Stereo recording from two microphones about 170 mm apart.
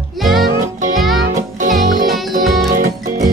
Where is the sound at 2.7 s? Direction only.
50° right (ahead or behind).